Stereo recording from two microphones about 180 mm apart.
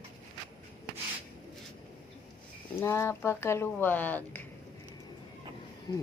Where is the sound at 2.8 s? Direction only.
15° left (ahead or behind).